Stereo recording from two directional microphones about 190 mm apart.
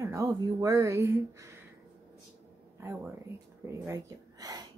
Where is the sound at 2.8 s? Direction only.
15° right (ahead or behind).